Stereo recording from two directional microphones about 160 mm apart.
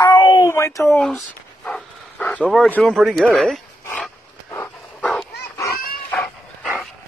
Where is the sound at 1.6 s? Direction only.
5° left (ahead or behind).